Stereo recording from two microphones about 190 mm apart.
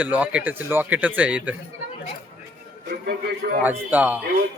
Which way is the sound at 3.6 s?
10° right (ahead or behind).